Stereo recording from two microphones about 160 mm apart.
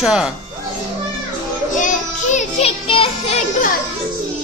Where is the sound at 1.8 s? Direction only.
50° left (ahead or behind).